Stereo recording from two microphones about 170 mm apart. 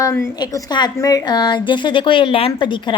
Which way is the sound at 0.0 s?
15° left (ahead or behind).